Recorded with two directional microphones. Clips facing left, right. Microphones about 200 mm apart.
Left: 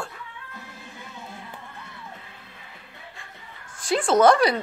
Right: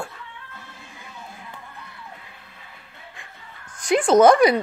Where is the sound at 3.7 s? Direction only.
15° right (ahead or behind).